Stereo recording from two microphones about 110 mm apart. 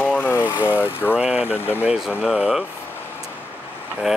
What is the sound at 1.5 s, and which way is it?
Speech, 20° left (ahead or behind).